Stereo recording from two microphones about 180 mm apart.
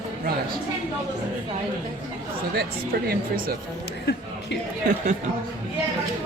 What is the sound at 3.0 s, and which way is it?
Speech, 55° right (ahead or behind).